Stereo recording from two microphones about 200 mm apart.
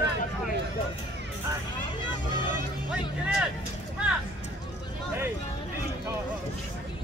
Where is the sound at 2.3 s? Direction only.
20° left (ahead or behind).